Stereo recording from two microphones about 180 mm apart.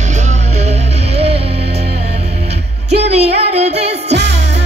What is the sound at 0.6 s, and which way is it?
Music, 35° right (ahead or behind).